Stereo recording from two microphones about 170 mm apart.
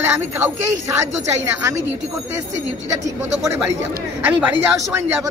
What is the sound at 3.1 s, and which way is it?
A man's voice, 15° right (ahead or behind).